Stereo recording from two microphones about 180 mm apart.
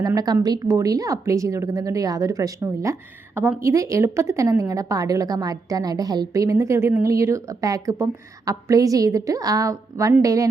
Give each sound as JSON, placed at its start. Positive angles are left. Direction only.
{"t": 0.0, "sound": "a woman's voice", "side_deg": -20}